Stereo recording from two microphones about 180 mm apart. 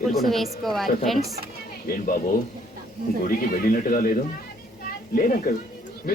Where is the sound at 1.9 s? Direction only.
50° left (ahead or behind).